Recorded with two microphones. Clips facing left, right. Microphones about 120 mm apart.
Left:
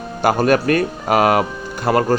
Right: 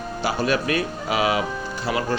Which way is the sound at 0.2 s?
50° left (ahead or behind).